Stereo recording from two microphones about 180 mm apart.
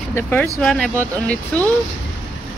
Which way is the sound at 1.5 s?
5° left (ahead or behind).